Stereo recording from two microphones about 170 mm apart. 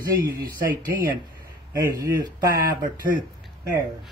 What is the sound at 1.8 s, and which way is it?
Speech, 15° right (ahead or behind).